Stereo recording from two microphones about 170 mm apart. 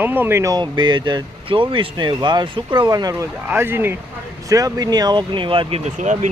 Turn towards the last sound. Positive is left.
turn(degrees=-45)  # may be behind; listen again after turning